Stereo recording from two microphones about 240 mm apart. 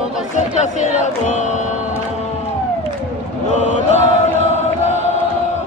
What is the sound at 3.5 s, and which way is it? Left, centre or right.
Chant, left.